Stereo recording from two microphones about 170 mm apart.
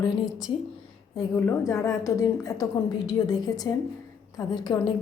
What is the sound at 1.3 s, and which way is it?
A woman's voice, 15° left (ahead or behind).